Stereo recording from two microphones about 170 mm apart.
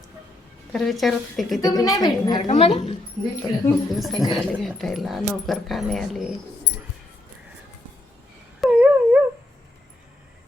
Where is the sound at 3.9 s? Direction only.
Centre (ahead or behind).